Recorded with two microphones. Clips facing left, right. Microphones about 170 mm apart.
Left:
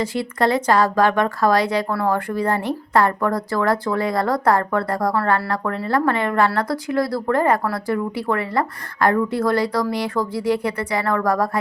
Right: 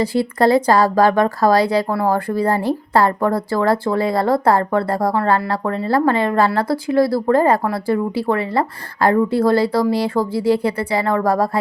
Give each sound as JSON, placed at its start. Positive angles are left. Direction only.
{"t": 0.0, "sound": "speech", "side_deg": -35}